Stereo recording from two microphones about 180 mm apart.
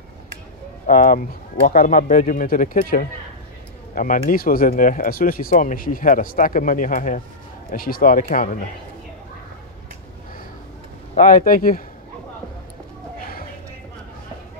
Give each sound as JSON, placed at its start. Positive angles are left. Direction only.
{"t": 0.8, "sound": "speech", "side_deg": 50}
{"t": 11.1, "sound": "speech", "side_deg": 50}